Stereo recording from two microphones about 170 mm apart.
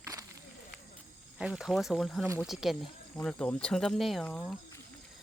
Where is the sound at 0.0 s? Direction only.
20° right (ahead or behind).